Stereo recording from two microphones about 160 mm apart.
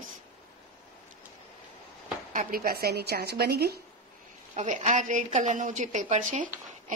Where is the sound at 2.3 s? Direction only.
70° right (ahead or behind); by 3.8 s 85° right.